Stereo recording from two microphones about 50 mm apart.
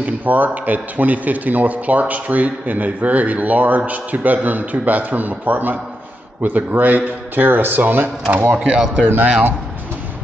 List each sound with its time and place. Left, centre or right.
0.0 s a man's voice: right
8.5 s speech: centre
9.0 s a man's voice: right